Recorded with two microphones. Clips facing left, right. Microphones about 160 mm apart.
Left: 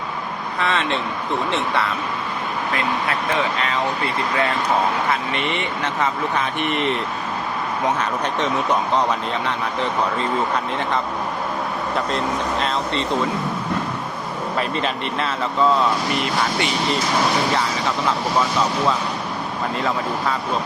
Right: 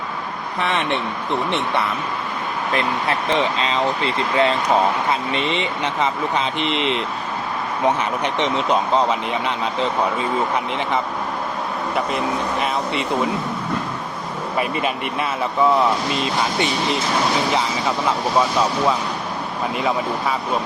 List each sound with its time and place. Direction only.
0.6 s speech: 15° right (ahead or behind)
3.6 s speech: 25° right (ahead or behind)
11.9 s speech: 10° right (ahead or behind)
14.6 s speech: 10° right (ahead or behind)